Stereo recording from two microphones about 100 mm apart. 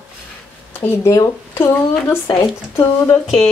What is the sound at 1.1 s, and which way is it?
A woman's voice, 30° left (ahead or behind).